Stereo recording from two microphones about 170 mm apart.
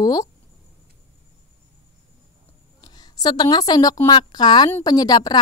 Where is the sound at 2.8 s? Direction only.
25° left (ahead or behind).